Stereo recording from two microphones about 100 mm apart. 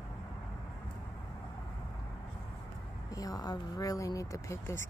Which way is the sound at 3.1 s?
35° left (ahead or behind).